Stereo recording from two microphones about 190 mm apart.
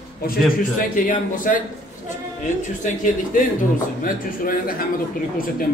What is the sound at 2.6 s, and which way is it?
A man's voice, 45° left (ahead or behind).